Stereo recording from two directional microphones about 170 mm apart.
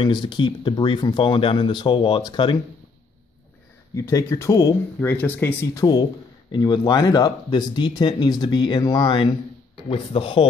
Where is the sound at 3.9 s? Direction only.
20° left (ahead or behind).